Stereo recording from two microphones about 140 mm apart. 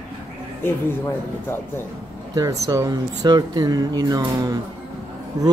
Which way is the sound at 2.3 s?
25° right (ahead or behind).